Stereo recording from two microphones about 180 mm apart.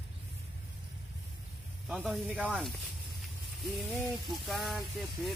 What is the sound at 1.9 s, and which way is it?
Speech, centre (ahead or behind).